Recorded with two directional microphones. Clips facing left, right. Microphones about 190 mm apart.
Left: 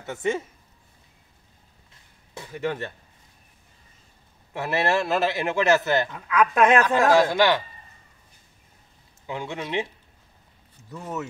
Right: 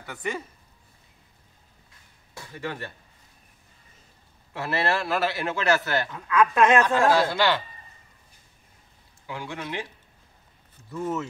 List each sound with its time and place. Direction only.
0.0 s speech: 25° left (ahead or behind)
2.3 s speech: 20° left (ahead or behind)
4.6 s speech: 20° left (ahead or behind)
9.2 s speech: 20° left (ahead or behind)
10.9 s speech: 15° left (ahead or behind)